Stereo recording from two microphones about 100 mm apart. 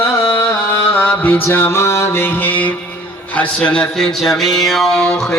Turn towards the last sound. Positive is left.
turn(degrees=5)  # may be behind; listen again after turning